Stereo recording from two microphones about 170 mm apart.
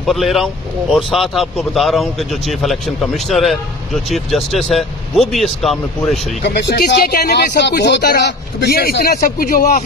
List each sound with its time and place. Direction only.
0.0 s a man's voice: centre (ahead or behind)
6.4 s speech: 80° left; by 9.8 s 55° left (ahead or behind)